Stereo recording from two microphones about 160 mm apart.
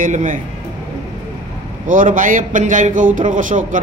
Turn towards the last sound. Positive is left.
turn(degrees=-55)  # may be behind; listen again after turning